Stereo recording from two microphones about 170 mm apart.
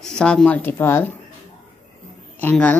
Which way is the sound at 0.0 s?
5° left (ahead or behind).